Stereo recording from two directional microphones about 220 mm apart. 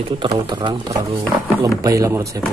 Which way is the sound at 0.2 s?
20° right (ahead or behind).